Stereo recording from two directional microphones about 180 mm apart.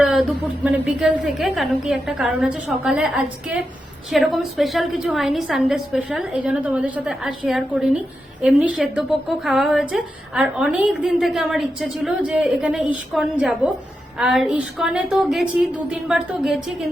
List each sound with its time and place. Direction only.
0.0 s a woman's voice: centre (ahead or behind)